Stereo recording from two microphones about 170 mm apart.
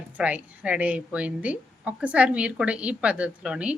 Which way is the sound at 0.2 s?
10° right (ahead or behind).